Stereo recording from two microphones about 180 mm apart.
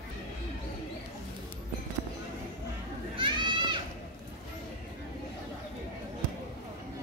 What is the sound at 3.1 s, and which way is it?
Children playing, 25° right (ahead or behind).